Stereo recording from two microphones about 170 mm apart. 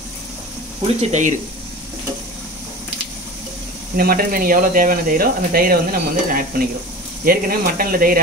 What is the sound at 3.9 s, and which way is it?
Speech, 60° right (ahead or behind).